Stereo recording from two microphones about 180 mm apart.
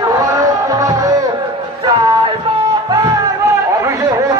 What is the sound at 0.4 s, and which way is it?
Music, 20° right (ahead or behind).